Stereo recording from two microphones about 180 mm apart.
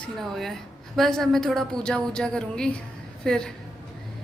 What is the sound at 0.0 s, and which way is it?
A woman's voice, centre (ahead or behind).